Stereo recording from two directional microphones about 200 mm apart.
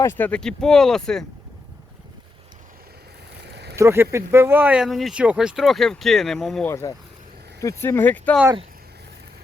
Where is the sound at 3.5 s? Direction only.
55° right (ahead or behind).